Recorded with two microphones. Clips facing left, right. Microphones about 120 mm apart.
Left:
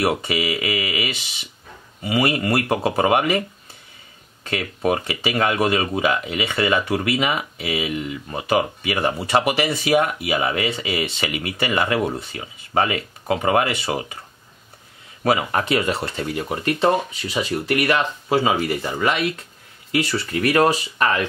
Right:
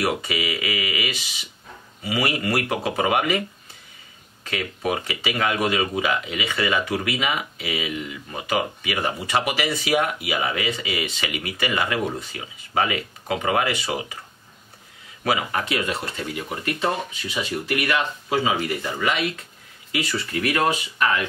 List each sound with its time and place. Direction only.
0.0 s speech: 30° left (ahead or behind)
4.5 s speech: 35° left (ahead or behind)
15.2 s speech: 35° left (ahead or behind)